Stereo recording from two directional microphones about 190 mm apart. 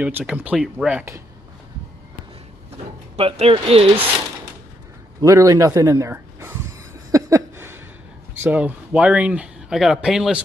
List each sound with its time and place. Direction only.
0.0 s speech: 5° right (ahead or behind)
3.2 s speech: 30° right (ahead or behind)
5.2 s a sound: 15° right (ahead or behind)
8.4 s speech: 10° right (ahead or behind)